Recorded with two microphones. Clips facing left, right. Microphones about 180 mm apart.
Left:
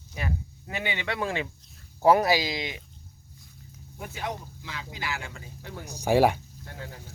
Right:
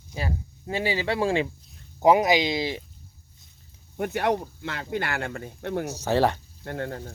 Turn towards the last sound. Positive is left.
turn(degrees=-60)  # may be behind; listen again after turning